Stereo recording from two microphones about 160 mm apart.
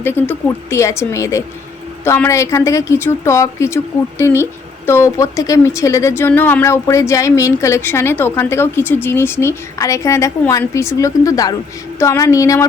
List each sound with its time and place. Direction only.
0.0 s a woman's voice: 15° left (ahead or behind)